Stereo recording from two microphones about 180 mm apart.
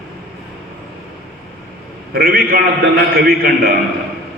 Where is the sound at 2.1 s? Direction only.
55° right (ahead or behind).